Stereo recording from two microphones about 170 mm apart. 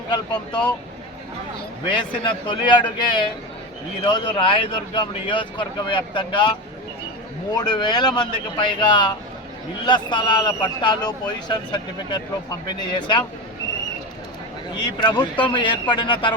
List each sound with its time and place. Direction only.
0.1 s speech: 25° left (ahead or behind)
1.9 s speech: 30° left (ahead or behind)
7.5 s speech: 25° left (ahead or behind)
15.0 s speech: 25° left (ahead or behind)